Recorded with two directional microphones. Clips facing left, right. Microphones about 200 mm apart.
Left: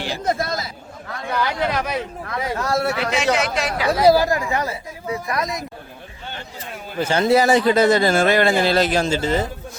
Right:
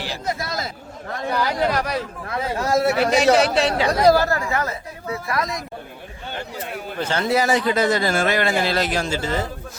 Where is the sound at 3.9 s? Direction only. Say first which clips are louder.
Left 4 dB; 5° left (ahead or behind).